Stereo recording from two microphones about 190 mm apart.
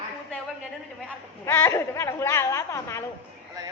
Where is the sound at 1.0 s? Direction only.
15° left (ahead or behind).